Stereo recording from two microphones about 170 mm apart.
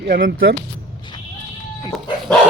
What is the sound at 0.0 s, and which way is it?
Speech, 75° right (ahead or behind).